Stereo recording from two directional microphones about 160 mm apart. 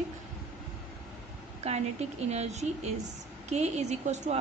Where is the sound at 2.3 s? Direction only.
45° right (ahead or behind).